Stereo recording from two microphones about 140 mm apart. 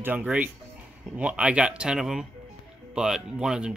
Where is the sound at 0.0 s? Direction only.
10° right (ahead or behind).